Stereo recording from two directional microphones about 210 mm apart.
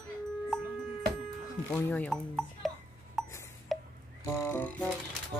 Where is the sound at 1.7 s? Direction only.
5° left (ahead or behind).